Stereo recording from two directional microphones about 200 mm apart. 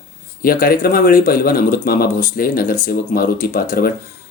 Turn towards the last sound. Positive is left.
turn(degrees=45)  # may be behind; listen again after turning